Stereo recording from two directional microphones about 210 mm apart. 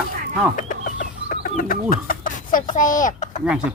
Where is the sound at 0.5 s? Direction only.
40° left (ahead or behind).